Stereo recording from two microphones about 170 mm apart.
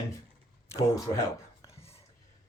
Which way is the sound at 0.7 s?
20° left (ahead or behind).